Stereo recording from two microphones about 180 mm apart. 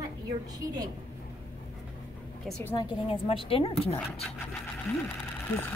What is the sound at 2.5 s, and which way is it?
Speech, 10° left (ahead or behind).